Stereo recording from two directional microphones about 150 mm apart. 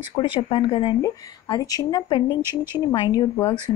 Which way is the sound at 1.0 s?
25° left (ahead or behind).